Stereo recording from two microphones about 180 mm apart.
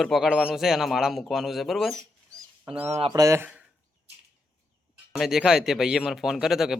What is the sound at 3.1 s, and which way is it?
Speech, 15° right (ahead or behind).